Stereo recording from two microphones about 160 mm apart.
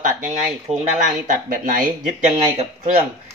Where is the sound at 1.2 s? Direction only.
55° right (ahead or behind).